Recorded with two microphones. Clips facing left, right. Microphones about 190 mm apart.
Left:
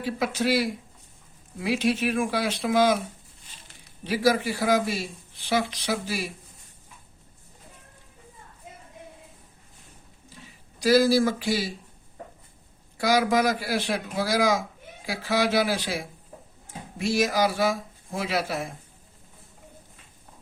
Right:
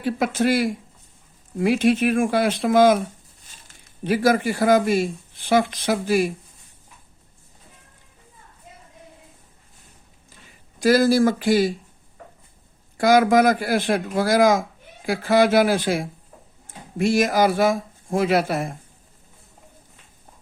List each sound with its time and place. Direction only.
0.0 s speech: 50° right (ahead or behind)
10.8 s speech: 50° right (ahead or behind)
13.0 s speech: 50° right (ahead or behind)